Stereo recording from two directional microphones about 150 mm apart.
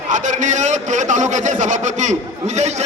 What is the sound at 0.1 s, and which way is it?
A man's voice, 55° right (ahead or behind).